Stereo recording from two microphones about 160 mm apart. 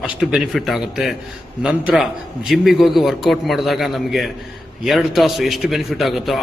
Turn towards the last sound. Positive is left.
turn(degrees=0)  # may be behind; listen again after turning